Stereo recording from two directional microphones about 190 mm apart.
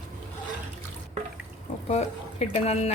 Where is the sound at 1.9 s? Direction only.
35° left (ahead or behind).